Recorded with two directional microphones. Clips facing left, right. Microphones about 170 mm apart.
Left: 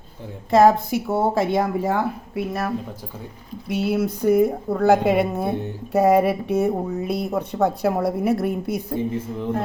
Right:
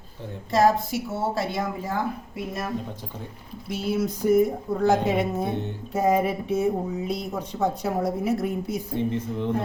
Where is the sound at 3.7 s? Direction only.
65° left (ahead or behind).